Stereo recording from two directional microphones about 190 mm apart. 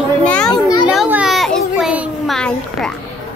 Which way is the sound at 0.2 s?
5° left (ahead or behind).